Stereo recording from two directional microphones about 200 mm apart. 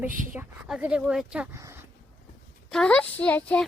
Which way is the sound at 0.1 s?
40° right (ahead or behind).